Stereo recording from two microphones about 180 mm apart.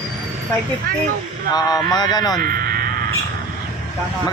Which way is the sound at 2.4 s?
55° right (ahead or behind).